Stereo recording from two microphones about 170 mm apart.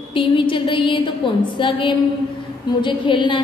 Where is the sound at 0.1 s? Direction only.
30° left (ahead or behind).